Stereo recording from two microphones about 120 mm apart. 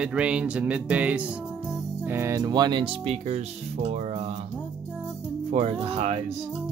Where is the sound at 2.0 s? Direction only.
20° right (ahead or behind).